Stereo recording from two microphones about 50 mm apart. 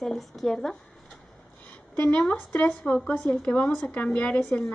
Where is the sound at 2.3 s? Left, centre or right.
Left.